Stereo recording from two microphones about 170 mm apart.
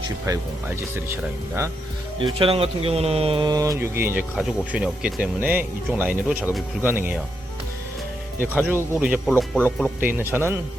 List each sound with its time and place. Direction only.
0.3 s speech: 20° right (ahead or behind)
2.4 s speech: 35° right (ahead or behind); by 7.2 s 10° right (ahead or behind)
8.4 s speech: 10° right (ahead or behind)
9.3 s speech: 10° left (ahead or behind)
10.1 s speech: 10° right (ahead or behind)